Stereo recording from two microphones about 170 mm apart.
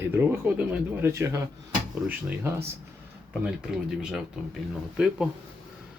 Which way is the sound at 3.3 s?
5° right (ahead or behind).